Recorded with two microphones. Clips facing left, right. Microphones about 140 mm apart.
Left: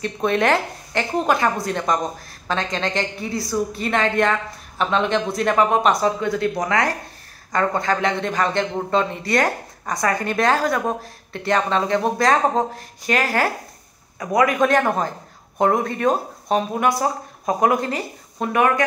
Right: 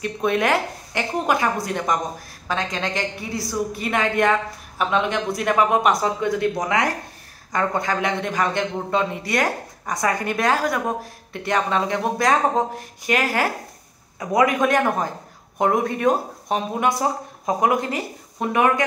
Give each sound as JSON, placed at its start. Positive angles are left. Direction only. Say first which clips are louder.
{"t": 0.0, "sound": "a man's voice", "louder": "left 1 dB", "side_deg": -10}